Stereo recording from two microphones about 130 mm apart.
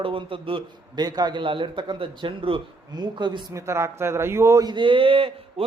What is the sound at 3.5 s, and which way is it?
A man's voice, 20° right (ahead or behind).